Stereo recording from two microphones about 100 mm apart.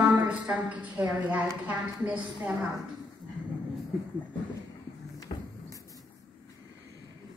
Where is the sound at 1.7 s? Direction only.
15° right (ahead or behind).